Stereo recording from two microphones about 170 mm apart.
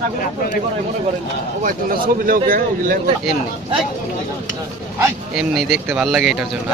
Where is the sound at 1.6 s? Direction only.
55° right (ahead or behind).